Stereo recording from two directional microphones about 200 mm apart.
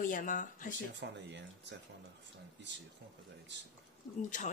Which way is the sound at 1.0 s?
60° right (ahead or behind).